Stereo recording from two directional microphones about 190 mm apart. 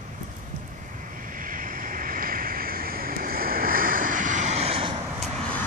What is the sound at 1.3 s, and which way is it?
Vehicle, 45° right (ahead or behind).